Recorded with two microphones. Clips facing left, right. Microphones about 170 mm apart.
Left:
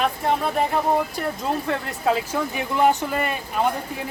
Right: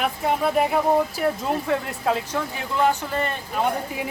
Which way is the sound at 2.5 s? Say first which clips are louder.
Left 3 dB; 15° left (ahead or behind).